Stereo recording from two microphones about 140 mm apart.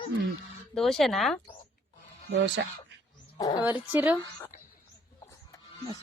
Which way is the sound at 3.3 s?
30° left (ahead or behind).